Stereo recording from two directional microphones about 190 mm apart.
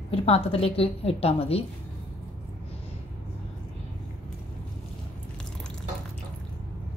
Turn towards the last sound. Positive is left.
turn(degrees=5)  # may be behind; listen again after turning